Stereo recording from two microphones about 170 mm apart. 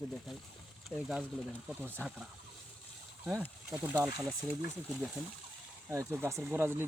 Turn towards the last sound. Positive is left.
turn(degrees=-15)  # may be behind; listen again after turning